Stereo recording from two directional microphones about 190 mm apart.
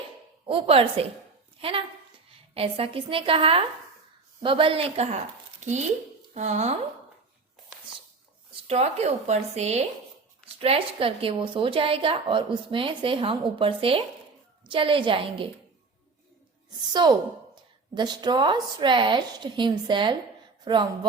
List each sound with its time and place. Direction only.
0.4 s a woman's voice: 30° right (ahead or behind)
2.6 s a woman's voice: 30° right (ahead or behind)
6.3 s speech: 35° right (ahead or behind)
8.6 s a woman's voice: 35° right (ahead or behind)
16.9 s a woman's voice: 25° right (ahead or behind)